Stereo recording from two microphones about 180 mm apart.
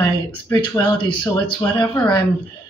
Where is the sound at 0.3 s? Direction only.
25° left (ahead or behind).